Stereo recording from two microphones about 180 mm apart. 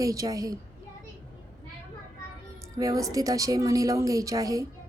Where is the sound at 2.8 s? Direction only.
20° right (ahead or behind).